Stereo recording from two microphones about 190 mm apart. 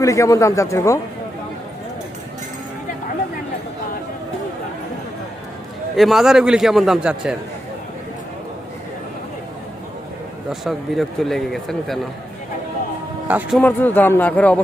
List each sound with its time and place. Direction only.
0.0 s speech: 15° left (ahead or behind)
6.0 s speech: centre (ahead or behind)
10.5 s speech: centre (ahead or behind)
13.2 s speech: 10° right (ahead or behind)
13.6 s speech: 10° left (ahead or behind)